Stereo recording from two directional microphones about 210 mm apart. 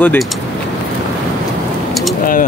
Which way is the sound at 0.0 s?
10° left (ahead or behind).